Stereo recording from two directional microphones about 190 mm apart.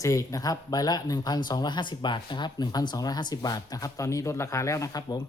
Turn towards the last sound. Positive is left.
turn(degrees=20)  # may be behind; listen again after turning